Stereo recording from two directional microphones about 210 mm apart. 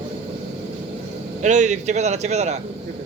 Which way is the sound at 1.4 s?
35° right (ahead or behind).